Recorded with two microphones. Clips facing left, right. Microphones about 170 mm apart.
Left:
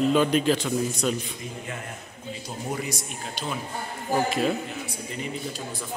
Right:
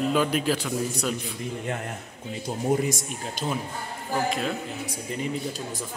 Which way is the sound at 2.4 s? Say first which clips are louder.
Right 8 dB; 50° right (ahead or behind).